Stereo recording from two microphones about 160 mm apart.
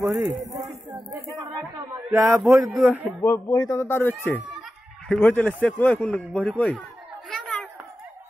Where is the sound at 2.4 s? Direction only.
Centre (ahead or behind).